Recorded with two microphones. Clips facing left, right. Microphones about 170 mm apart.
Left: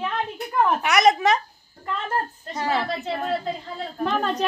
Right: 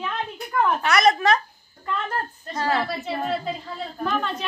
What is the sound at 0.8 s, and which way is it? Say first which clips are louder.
Speech: left 1 dB; 15° left (ahead or behind).